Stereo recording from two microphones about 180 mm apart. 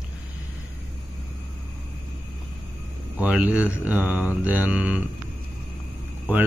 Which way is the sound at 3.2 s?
10° right (ahead or behind).